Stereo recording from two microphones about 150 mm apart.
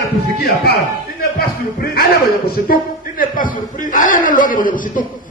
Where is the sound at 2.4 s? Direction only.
75° left (ahead or behind).